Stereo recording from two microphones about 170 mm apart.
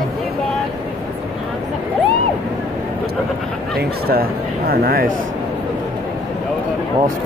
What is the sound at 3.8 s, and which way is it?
Speech, 65° right (ahead or behind).